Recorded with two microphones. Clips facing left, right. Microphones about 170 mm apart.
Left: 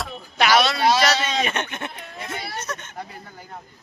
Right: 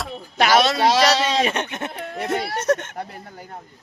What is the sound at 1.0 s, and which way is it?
Sheep, 35° right (ahead or behind).